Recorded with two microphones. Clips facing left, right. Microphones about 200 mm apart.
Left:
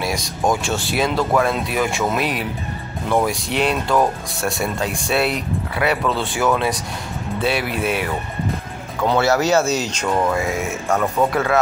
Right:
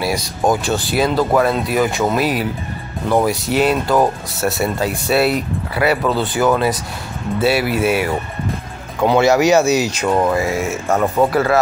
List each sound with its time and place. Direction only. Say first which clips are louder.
0.0 s music: right 3 dB; 5° right (ahead or behind)
0.5 s speech: right 3 dB; centre (ahead or behind)
10.9 s speech: right 3 dB; 15° right (ahead or behind)
11.3 s speech: right 3 dB; 5° right (ahead or behind)